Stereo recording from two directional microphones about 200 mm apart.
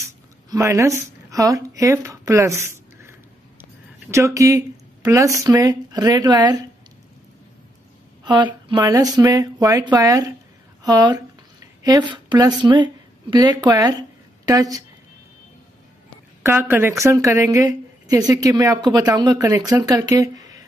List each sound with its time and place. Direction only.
0.0 s speech: 15° right (ahead or behind)
8.2 s a woman's voice: 20° right (ahead or behind)
16.4 s speech: 10° right (ahead or behind)